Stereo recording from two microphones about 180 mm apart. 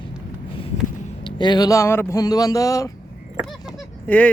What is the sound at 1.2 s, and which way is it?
Speech, 25° left (ahead or behind).